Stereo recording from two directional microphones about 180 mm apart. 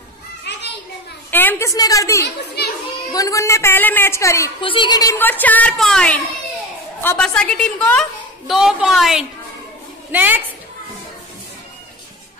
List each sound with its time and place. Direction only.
0.5 s children playing: 70° left (ahead or behind)
1.3 s a woman's voice: 10° left (ahead or behind)
2.2 s a child's voice: 65° left (ahead or behind)
3.1 s a woman's voice: 20° left (ahead or behind)
4.6 s a woman's voice: 30° left (ahead or behind); by 10.4 s 10° right (ahead or behind)